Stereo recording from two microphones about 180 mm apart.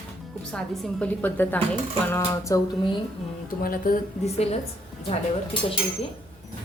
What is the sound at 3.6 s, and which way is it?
Speech, 50° left (ahead or behind).